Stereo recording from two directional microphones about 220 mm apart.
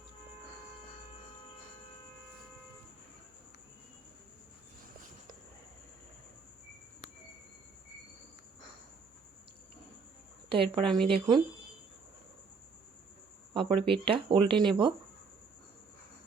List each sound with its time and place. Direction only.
10.5 s speech: 25° right (ahead or behind)
13.5 s speech: 20° right (ahead or behind)